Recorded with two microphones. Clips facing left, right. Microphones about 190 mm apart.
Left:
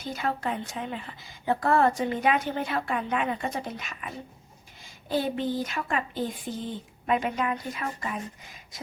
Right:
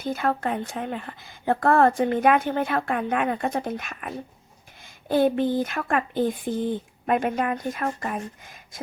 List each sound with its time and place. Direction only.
0.0 s a woman's voice: 55° right (ahead or behind)